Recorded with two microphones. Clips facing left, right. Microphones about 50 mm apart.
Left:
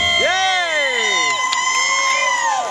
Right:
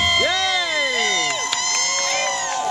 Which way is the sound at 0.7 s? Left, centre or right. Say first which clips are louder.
Left 3 dB; centre.